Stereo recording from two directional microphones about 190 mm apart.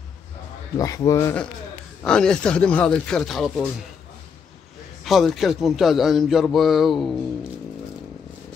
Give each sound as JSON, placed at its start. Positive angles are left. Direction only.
{"t": 0.7, "sound": "a man's voice", "side_deg": 15}
{"t": 5.0, "sound": "a man's voice", "side_deg": 0}